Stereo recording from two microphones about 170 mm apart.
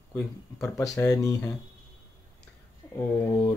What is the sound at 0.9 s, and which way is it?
Speech, 15° left (ahead or behind).